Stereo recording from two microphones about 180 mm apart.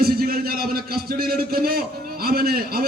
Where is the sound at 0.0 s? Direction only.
55° right (ahead or behind).